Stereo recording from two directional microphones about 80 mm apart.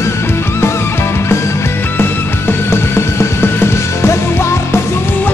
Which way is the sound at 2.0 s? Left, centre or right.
Left.